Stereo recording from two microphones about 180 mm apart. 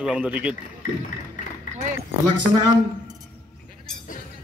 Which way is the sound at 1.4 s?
45° left (ahead or behind).